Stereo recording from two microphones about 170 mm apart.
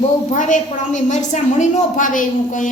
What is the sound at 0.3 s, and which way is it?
A woman's voice, 45° left (ahead or behind).